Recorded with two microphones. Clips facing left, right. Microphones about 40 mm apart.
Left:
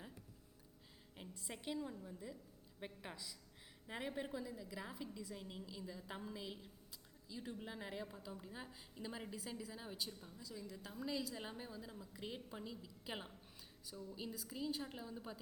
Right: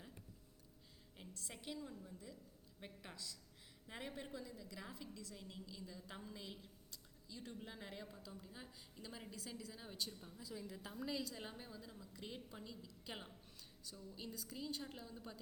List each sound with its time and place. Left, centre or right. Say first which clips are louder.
1.1 s a woman's voice: left 3 dB; centre
10.4 s a woman's voice: right 1 dB; centre
10.9 s a woman's voice: left 2 dB; centre